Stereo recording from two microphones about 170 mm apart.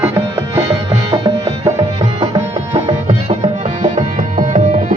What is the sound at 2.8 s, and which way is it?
Music, 40° right (ahead or behind).